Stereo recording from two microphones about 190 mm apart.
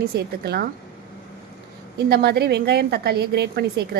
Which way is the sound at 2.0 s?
55° right (ahead or behind).